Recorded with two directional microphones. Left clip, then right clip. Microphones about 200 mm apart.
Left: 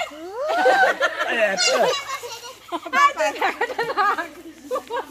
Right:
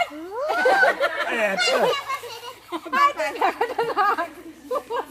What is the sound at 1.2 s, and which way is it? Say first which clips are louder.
Speech: left 3 dB; 50° right (ahead or behind).